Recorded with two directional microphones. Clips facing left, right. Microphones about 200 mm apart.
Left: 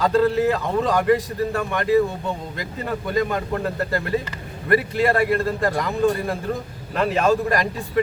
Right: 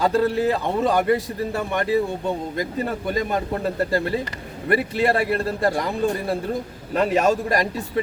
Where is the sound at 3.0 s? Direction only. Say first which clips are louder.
Left 1 dB; 20° right (ahead or behind).